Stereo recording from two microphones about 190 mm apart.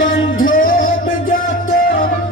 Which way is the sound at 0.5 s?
45° left (ahead or behind).